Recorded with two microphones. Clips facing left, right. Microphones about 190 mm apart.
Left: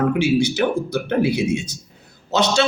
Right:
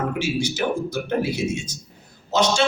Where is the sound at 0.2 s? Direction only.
65° left (ahead or behind).